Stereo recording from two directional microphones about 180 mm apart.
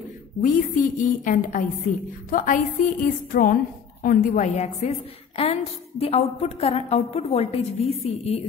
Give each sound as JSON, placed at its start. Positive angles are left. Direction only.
{"t": 0.4, "sound": "a woman's voice", "side_deg": 50}